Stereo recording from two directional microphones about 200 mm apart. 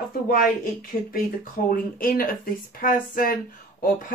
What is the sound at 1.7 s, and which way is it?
Speech, 45° left (ahead or behind).